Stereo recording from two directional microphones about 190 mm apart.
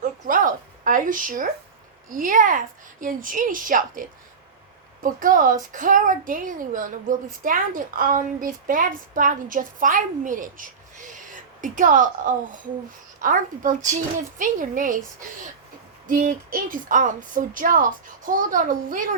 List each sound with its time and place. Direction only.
0.0 s a sound: 45° right (ahead or behind)
2.0 s a woman's voice: 45° right (ahead or behind)
5.0 s a woman's voice: 45° right (ahead or behind)
16.0 s a woman's voice: 45° right (ahead or behind)